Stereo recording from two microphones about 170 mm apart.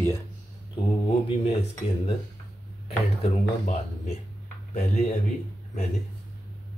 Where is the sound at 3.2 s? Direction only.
40° left (ahead or behind).